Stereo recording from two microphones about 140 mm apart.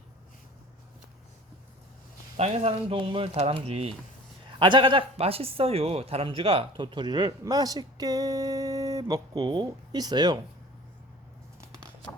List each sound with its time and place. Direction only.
2.4 s speech: 50° right (ahead or behind)
4.6 s speech: 35° right (ahead or behind)